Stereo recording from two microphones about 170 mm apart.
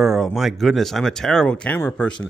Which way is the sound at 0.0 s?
Centre (ahead or behind).